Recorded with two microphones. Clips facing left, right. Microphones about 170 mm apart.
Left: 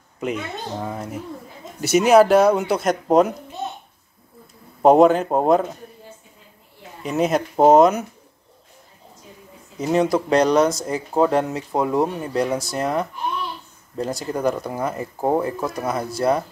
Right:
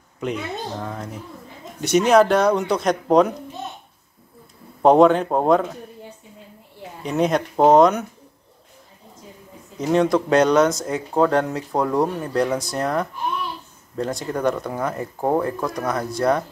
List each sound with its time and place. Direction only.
0.2 s speech: 5° left (ahead or behind)
4.8 s speech: 5° left (ahead or behind)
7.0 s speech: 5° left (ahead or behind)
9.8 s speech: 5° left (ahead or behind)